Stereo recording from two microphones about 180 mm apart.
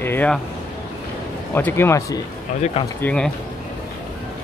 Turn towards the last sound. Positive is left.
turn(degrees=5)  # may be behind; listen again after turning